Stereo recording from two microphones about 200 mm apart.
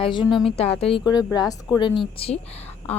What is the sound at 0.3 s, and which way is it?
Speech, centre (ahead or behind).